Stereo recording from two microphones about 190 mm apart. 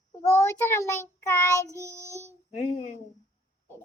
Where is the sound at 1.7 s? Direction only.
15° right (ahead or behind).